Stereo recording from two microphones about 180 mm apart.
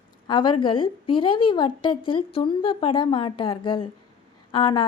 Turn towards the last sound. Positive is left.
turn(degrees=25)  # may be behind; listen again after turning